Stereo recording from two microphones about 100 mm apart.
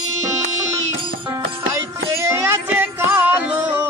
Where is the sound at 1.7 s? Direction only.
30° right (ahead or behind).